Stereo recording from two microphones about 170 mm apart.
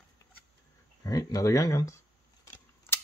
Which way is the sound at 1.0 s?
20° left (ahead or behind).